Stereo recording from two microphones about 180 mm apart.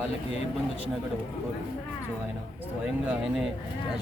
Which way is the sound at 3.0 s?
5° right (ahead or behind).